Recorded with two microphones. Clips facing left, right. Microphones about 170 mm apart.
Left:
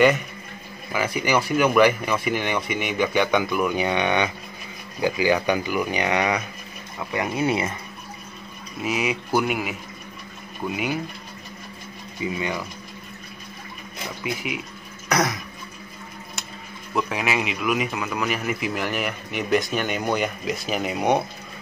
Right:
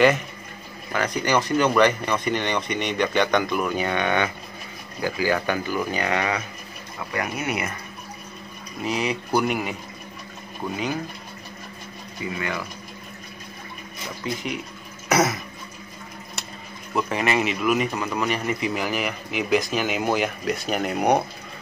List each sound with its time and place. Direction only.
0.9 s speech: 5° left (ahead or behind); by 7.7 s 25° left (ahead or behind)
8.8 s speech: 5° left (ahead or behind)
12.4 s speech: 20° left (ahead or behind)
14.2 s speech: 5° left (ahead or behind)
15.0 s speech: 5° right (ahead or behind)
16.9 s speech: centre (ahead or behind)